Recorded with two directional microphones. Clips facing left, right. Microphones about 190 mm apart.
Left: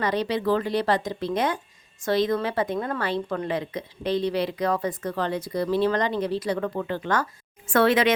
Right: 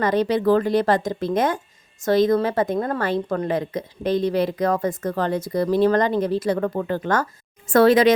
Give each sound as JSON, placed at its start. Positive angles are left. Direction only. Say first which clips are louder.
{"t": 0.0, "sound": "a woman's voice", "louder": "right 5 dB", "side_deg": -50}